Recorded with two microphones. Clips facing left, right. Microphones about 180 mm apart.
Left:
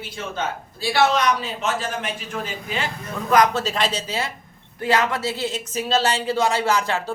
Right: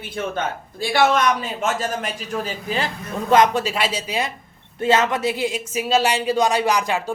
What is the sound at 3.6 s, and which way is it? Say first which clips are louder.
Speech: right 1 dB; 10° right (ahead or behind).